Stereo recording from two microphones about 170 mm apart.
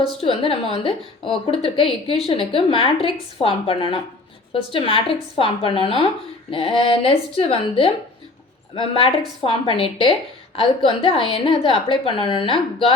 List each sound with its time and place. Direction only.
0.2 s a woman's voice: 35° left (ahead or behind)